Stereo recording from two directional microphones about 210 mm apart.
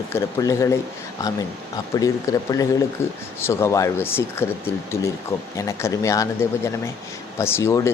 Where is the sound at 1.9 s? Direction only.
15° left (ahead or behind).